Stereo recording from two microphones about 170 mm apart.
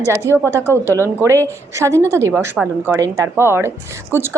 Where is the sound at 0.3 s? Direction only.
15° right (ahead or behind).